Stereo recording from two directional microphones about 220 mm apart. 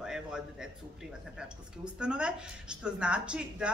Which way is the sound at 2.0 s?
5° right (ahead or behind).